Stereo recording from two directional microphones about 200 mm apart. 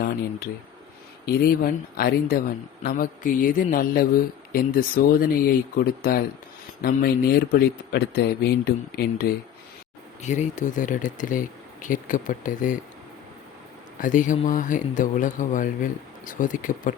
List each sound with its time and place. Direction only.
1.2 s speech: 50° left (ahead or behind)
10.2 s speech: 35° left (ahead or behind)
14.0 s speech: 40° left (ahead or behind)